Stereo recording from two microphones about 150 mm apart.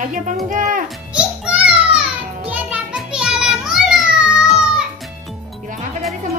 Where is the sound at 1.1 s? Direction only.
5° right (ahead or behind).